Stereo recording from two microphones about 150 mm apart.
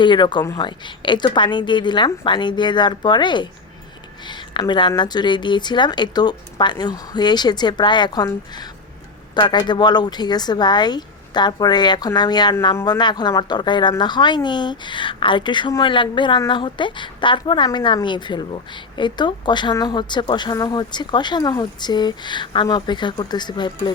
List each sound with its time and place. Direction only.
0.0 s a woman's voice: 30° left (ahead or behind)